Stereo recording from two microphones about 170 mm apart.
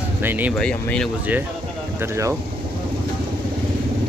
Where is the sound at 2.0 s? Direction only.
15° right (ahead or behind).